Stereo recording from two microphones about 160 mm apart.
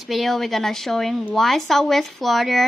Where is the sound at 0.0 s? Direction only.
Centre (ahead or behind).